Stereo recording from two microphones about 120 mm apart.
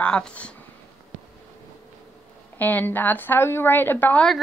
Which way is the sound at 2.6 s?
15° left (ahead or behind).